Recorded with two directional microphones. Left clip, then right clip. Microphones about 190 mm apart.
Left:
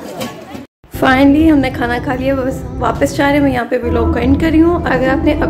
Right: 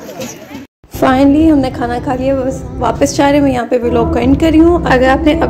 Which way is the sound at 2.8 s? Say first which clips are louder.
Right 2 dB; 15° right (ahead or behind).